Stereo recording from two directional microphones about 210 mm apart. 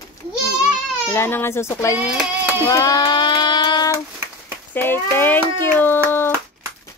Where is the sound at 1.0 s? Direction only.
10° left (ahead or behind).